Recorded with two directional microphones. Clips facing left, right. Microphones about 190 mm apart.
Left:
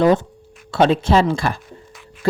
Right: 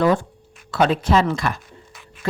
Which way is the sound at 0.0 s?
20° left (ahead or behind).